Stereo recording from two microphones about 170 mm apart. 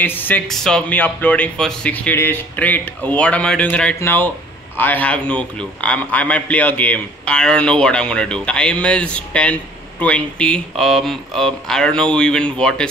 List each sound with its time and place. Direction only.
0.0 s a man's voice: 10° left (ahead or behind)